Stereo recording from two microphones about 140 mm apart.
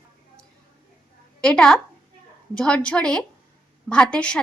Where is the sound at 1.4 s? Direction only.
5° left (ahead or behind).